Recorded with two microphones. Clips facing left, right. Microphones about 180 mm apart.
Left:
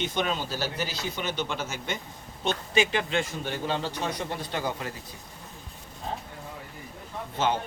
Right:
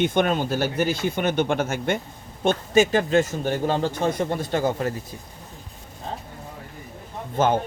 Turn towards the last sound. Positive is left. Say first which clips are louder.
# right 6 dB
turn(degrees=-50)  # may be behind; listen again after turning